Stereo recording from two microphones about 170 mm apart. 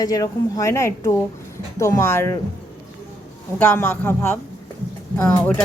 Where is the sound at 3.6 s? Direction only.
10° left (ahead or behind).